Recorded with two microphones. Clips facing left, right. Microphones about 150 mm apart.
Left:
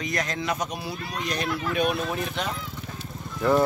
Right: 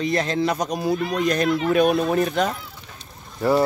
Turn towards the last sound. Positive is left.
turn(degrees=-5)  # may be behind; listen again after turning